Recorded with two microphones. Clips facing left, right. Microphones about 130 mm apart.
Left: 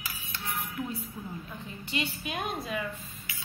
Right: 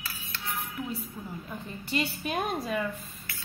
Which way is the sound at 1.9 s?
40° right (ahead or behind).